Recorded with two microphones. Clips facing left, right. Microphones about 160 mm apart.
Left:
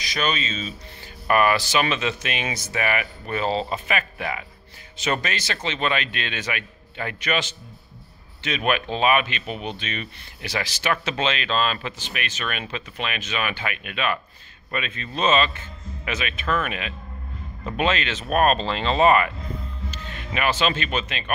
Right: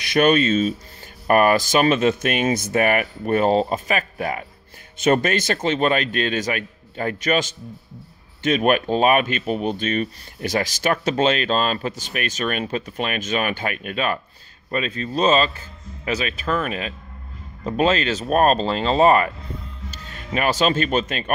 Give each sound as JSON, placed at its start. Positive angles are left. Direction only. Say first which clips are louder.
{"t": 0.0, "sound": "speech", "louder": "right 10 dB", "side_deg": -55}